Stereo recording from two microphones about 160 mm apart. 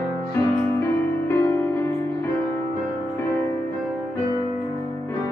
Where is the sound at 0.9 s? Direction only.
15° left (ahead or behind).